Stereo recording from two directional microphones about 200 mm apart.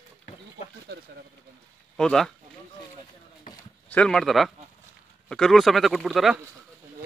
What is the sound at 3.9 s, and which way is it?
Speech, 5° left (ahead or behind).